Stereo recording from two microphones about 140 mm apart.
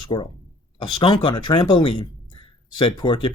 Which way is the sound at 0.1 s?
35° left (ahead or behind).